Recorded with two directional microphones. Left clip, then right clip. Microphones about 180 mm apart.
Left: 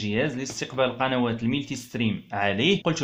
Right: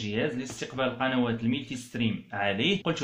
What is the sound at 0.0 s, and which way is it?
Speech, 50° left (ahead or behind).